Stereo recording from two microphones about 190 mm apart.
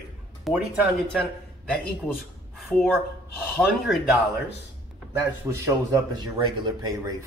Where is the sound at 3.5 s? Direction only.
Centre (ahead or behind).